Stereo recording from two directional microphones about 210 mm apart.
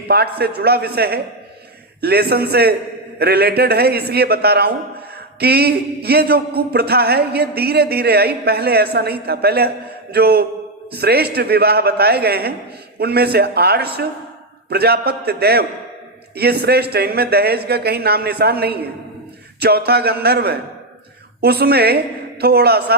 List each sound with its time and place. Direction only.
0.1 s a man's voice: 50° right (ahead or behind)